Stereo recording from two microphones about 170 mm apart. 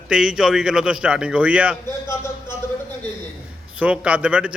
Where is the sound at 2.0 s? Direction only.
15° left (ahead or behind).